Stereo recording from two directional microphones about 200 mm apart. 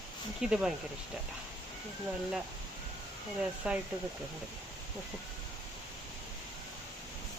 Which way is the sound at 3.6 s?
5° right (ahead or behind).